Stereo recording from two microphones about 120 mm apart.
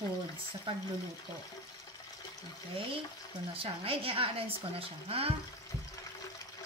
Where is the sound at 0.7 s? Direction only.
45° right (ahead or behind).